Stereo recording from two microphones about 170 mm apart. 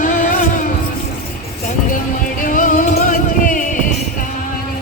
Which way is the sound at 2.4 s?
50° left (ahead or behind).